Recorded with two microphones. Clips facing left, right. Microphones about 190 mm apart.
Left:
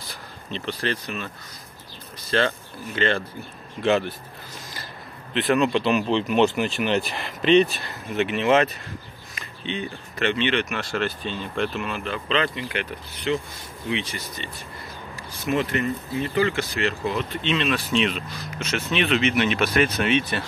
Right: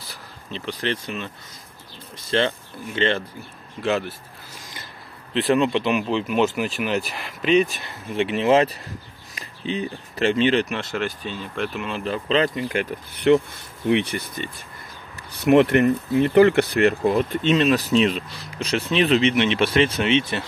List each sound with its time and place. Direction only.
0.1 s speech: 5° right (ahead or behind); by 1.3 s 25° right (ahead or behind)
2.3 s speech: 20° right (ahead or behind)
3.8 s speech: centre (ahead or behind)
5.3 s speech: 25° right (ahead or behind)
6.0 s speech: 5° right (ahead or behind)
8.1 s speech: 30° right (ahead or behind); by 11.3 s 15° right (ahead or behind)
11.5 s speech: 5° right (ahead or behind)
11.8 s speech: 30° right (ahead or behind)
13.1 s speech: 60° right (ahead or behind)
15.3 s speech: 65° right (ahead or behind); by 20.4 s 25° right (ahead or behind)